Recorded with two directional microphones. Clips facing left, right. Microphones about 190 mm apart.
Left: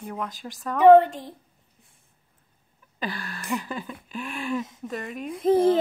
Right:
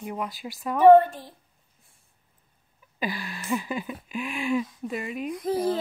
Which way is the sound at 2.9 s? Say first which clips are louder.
Right 1 dB; 10° right (ahead or behind).